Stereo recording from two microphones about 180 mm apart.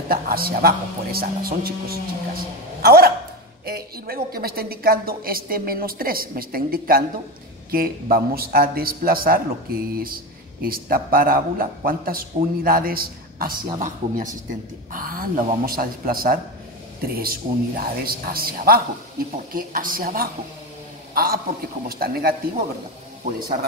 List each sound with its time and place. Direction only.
0.1 s a woman's voice: 55° right (ahead or behind)